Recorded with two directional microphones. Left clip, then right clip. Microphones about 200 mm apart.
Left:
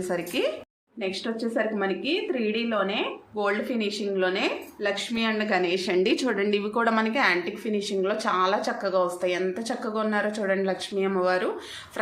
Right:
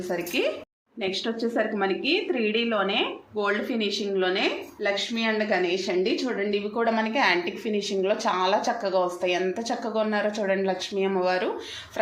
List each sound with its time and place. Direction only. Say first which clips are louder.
0.1 s a woman's voice: right 1 dB; 10° left (ahead or behind)